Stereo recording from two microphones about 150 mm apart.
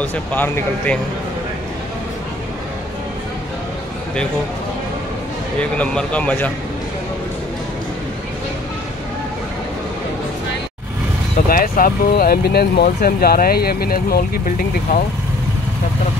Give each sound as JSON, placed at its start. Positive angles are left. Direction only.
{"t": 0.0, "sound": "speech", "side_deg": 10}
{"t": 5.6, "sound": "speech", "side_deg": 10}
{"t": 11.4, "sound": "speech", "side_deg": 75}